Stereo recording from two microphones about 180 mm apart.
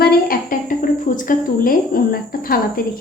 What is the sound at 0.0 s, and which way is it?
A woman's voice, 55° left (ahead or behind).